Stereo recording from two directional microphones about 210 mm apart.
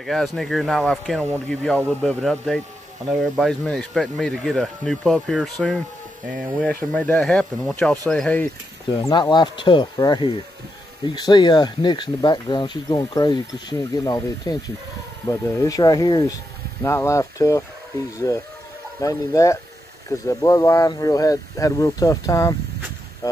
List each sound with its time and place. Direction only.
0.0 s speech: centre (ahead or behind)
9.1 s speech: 20° left (ahead or behind)
23.2 s boat: 15° left (ahead or behind)